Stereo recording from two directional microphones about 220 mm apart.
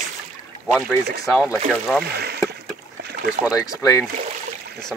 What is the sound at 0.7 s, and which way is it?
Speech, centre (ahead or behind).